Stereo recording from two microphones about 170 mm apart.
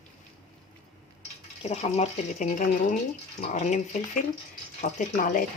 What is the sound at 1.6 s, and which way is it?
Speech, 40° left (ahead or behind).